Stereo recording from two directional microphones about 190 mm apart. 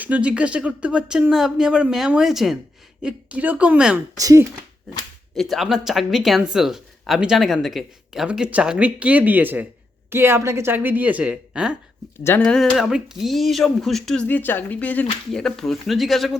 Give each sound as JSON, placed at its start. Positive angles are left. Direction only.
{"t": 0.0, "sound": "a woman's voice", "side_deg": -5}
{"t": 4.2, "sound": "a woman's voice", "side_deg": -20}
{"t": 5.3, "sound": "a woman's voice", "side_deg": 0}
{"t": 12.2, "sound": "speech", "side_deg": 10}